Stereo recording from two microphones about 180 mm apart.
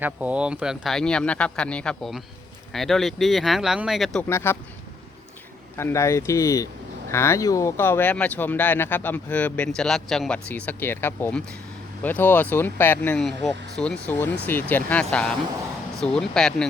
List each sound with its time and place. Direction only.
0.0 s speech: 10° right (ahead or behind)
4.3 s speech: 15° left (ahead or behind)
5.7 s speech: 15° left (ahead or behind)